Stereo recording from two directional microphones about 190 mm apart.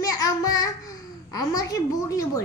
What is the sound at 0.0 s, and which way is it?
Child singing, 20° left (ahead or behind).